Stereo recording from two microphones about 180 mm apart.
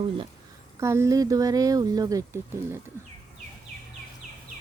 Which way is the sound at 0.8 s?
15° right (ahead or behind).